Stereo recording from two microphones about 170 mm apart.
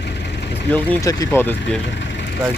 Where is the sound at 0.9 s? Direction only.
20° left (ahead or behind).